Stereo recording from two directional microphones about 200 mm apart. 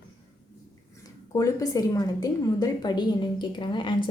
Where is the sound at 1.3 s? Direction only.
15° left (ahead or behind).